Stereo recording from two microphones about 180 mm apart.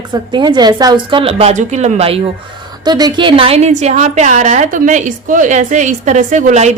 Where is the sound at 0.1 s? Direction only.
25° right (ahead or behind).